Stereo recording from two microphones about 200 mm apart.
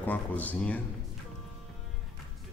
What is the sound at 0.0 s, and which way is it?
Speech, 10° left (ahead or behind).